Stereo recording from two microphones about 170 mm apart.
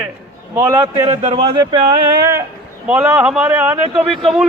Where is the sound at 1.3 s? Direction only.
30° right (ahead or behind).